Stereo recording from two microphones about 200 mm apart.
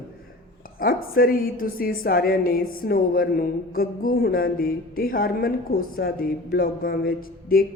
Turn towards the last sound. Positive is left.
turn(degrees=45)  # may be behind; listen again after turning